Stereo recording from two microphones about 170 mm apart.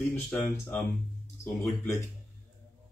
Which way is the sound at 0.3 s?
10° left (ahead or behind).